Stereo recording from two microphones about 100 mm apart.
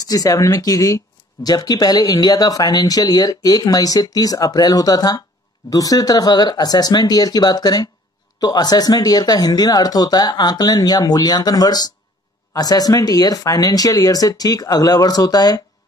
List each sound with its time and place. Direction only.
0.0 s speech: 40° left (ahead or behind)